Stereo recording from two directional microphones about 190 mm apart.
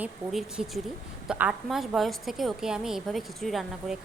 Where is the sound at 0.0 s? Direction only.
5° right (ahead or behind).